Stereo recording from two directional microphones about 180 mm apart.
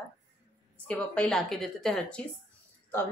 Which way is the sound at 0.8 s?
5° left (ahead or behind).